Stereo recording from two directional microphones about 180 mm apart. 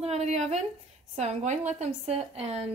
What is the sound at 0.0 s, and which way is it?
A woman's voice, 40° right (ahead or behind).